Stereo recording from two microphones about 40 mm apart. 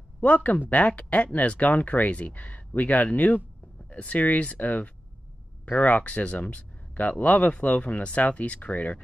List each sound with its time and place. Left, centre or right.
0.2 s speech: left